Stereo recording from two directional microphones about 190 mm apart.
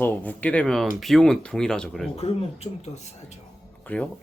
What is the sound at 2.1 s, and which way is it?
Speech, 30° left (ahead or behind).